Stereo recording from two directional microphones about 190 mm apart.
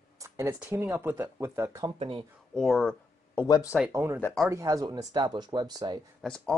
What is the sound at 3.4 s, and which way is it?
Speech, 20° left (ahead or behind).